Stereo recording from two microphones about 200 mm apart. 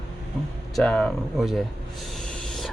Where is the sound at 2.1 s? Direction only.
5° left (ahead or behind).